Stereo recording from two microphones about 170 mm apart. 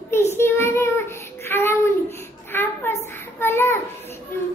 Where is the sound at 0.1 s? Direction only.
15° left (ahead or behind).